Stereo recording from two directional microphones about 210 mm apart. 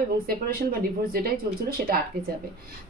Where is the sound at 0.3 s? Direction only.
45° right (ahead or behind).